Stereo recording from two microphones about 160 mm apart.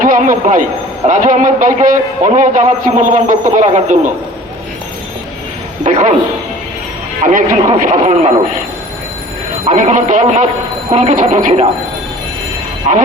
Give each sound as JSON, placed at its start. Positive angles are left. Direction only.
{"t": 0.0, "sound": "a man's voice", "side_deg": -55}
{"t": 5.8, "sound": "a sound", "side_deg": -45}
{"t": 7.3, "sound": "a man's voice", "side_deg": -50}
{"t": 9.6, "sound": "a man's voice", "side_deg": -50}